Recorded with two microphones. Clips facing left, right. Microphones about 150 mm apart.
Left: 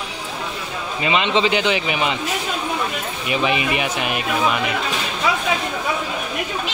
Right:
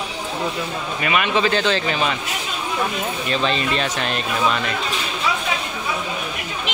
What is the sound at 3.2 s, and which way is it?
Speech, 15° left (ahead or behind).